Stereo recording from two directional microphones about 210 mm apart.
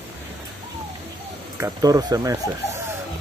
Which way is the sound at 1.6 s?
15° right (ahead or behind).